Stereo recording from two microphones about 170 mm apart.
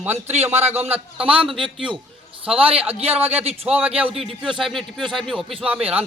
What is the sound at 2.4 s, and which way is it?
Speech, 35° right (ahead or behind).